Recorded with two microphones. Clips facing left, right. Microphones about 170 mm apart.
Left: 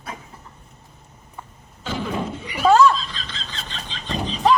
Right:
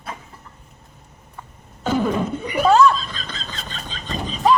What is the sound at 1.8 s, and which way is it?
Chuckle, 45° right (ahead or behind).